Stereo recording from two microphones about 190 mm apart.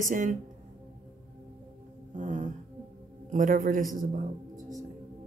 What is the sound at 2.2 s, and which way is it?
Music, 40° right (ahead or behind).